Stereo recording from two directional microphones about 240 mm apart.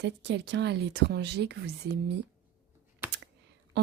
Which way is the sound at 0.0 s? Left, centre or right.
Right.